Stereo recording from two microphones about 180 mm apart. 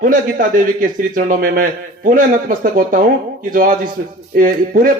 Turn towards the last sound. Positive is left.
turn(degrees=-50)  # may be behind; listen again after turning